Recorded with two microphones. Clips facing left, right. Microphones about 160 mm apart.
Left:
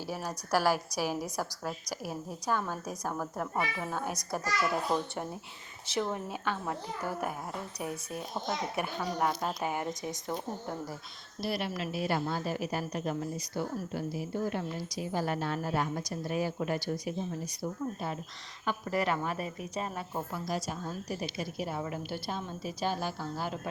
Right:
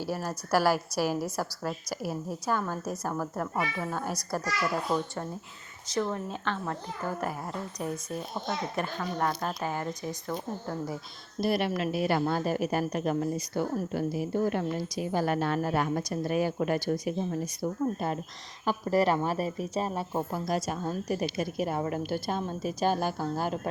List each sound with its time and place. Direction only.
0.0 s a woman's voice: 10° right (ahead or behind); by 4.4 s 15° left (ahead or behind)
6.0 s speech: 15° left (ahead or behind)
11.3 s a woman's voice: 55° right (ahead or behind)
18.6 s a woman's voice: 35° right (ahead or behind)
20.5 s a woman's voice: 55° right (ahead or behind)